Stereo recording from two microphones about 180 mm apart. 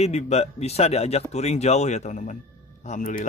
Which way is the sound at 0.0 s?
35° left (ahead or behind).